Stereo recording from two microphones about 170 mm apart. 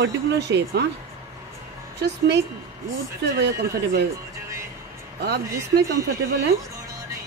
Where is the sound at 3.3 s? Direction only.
75° right (ahead or behind).